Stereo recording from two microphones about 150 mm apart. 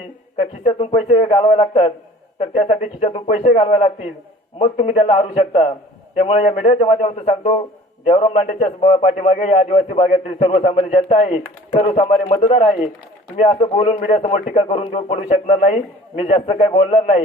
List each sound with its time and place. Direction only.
0.8 s a man's voice: 55° left (ahead or behind)
1.3 s a man's voice: 40° left (ahead or behind)
3.6 s a man's voice: 40° left (ahead or behind)